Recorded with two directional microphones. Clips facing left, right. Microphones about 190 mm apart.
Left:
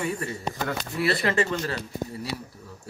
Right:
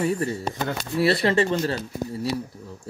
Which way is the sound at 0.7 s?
Centre (ahead or behind).